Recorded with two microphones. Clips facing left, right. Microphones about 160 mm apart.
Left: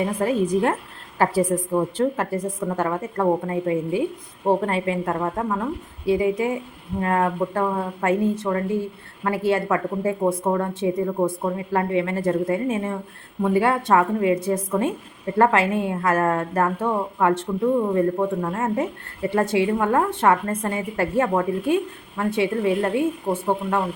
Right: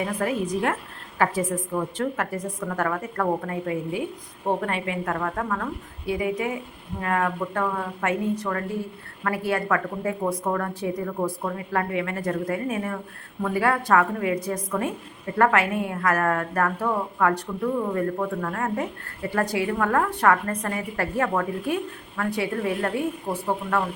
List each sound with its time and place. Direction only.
0.2 s a woman's voice: 30° left (ahead or behind)